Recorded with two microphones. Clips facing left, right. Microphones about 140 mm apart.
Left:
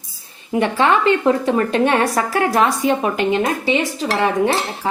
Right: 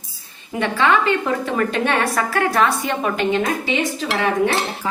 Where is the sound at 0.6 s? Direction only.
25° left (ahead or behind).